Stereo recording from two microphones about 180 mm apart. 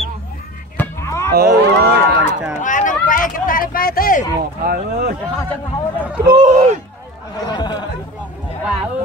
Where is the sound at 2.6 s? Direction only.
45° left (ahead or behind).